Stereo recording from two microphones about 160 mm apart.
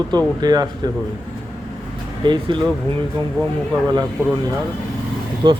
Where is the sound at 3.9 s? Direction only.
25° right (ahead or behind).